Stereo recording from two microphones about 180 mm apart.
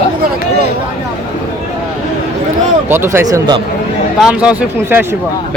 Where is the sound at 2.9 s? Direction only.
15° right (ahead or behind).